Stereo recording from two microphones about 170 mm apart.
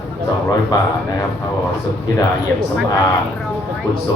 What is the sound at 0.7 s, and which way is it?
Speech, 25° left (ahead or behind).